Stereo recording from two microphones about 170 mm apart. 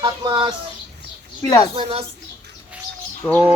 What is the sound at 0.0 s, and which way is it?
Speech, 30° right (ahead or behind).